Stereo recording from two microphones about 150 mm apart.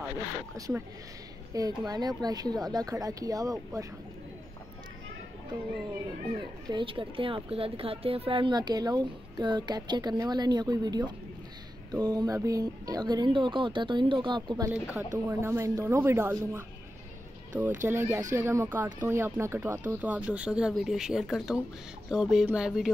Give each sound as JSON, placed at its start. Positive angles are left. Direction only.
{"t": 0.6, "sound": "a woman's voice", "side_deg": -25}
{"t": 6.7, "sound": "a woman's voice", "side_deg": -35}
{"t": 14.7, "sound": "speech", "side_deg": -10}
{"t": 17.8, "sound": "speech", "side_deg": -15}